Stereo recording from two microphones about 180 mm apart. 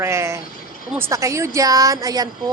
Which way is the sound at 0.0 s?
15° right (ahead or behind).